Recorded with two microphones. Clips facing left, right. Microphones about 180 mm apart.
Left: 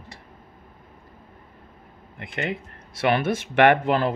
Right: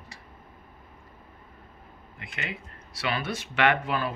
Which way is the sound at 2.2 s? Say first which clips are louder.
Left 9 dB; 55° left (ahead or behind).